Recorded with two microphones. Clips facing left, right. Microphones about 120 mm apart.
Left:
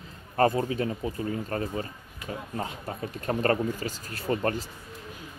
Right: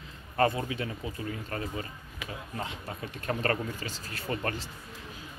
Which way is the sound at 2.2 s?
90° right.